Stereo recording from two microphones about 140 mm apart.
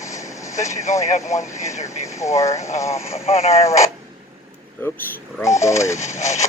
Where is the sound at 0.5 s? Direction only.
60° left (ahead or behind).